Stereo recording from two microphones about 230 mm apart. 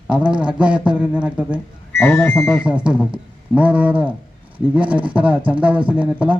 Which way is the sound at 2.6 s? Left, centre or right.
Centre.